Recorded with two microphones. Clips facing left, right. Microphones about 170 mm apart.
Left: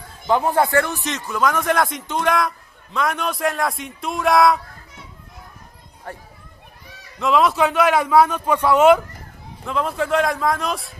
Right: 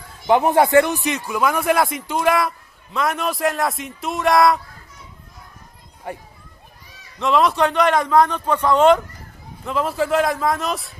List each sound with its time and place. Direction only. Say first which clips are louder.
0.3 s speech: right 3 dB; 20° right (ahead or behind); by 4.6 s centre (ahead or behind)
6.1 s a child's voice: right 4 dB; 15° right (ahead or behind)
7.2 s speech: even; centre (ahead or behind)
9.7 s speech: right 1 dB; centre (ahead or behind)